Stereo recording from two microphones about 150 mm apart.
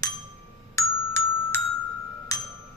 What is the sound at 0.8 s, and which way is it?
Glockenspiel, 20° left (ahead or behind).